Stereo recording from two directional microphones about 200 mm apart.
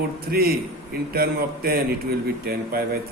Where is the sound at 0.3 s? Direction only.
50° right (ahead or behind).